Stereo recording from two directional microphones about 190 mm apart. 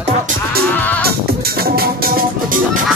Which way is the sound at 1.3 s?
55° right (ahead or behind).